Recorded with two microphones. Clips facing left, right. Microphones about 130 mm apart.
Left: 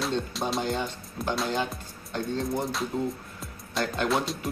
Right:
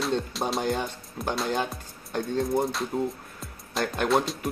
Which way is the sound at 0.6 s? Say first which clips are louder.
Right 2 dB; 50° right (ahead or behind).